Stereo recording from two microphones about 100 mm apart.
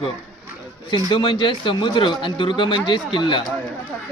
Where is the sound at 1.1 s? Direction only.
50° left (ahead or behind).